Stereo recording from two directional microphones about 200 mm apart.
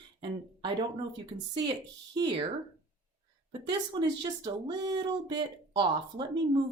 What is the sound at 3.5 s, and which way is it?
Speech, 20° right (ahead or behind).